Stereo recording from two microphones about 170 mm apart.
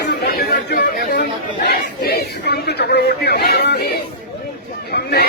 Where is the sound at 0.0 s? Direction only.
70° left (ahead or behind).